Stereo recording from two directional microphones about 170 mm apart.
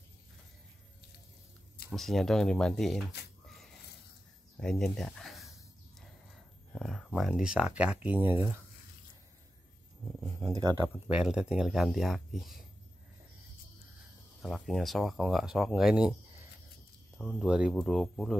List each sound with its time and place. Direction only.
1.9 s speech: centre (ahead or behind)
4.6 s a sound: 5° left (ahead or behind)
6.7 s speech: centre (ahead or behind); by 8.5 s 15° right (ahead or behind)
10.4 s speech: 35° right (ahead or behind)
11.1 s speech: 5° right (ahead or behind)
14.4 s speech: centre (ahead or behind)
17.2 s speech: centre (ahead or behind)